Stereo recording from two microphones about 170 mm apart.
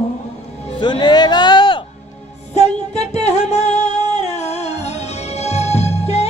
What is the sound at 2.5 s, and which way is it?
Music, 40° left (ahead or behind).